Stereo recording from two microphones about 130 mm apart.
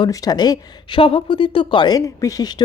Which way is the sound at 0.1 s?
30° left (ahead or behind).